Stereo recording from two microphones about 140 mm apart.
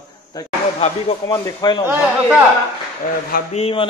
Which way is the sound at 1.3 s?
30° left (ahead or behind).